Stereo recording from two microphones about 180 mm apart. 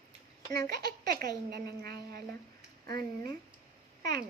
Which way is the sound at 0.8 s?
60° right (ahead or behind).